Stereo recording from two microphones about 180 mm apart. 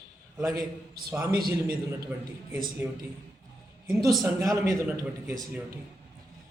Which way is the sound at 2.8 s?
15° right (ahead or behind).